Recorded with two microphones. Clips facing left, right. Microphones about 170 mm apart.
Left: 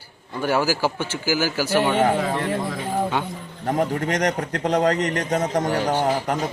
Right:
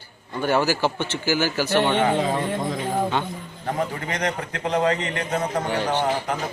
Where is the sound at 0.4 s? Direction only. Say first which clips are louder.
Even; 5° left (ahead or behind).